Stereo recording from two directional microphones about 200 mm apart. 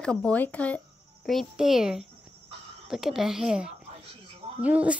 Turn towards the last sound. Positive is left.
turn(degrees=-5)  # may be behind; listen again after turning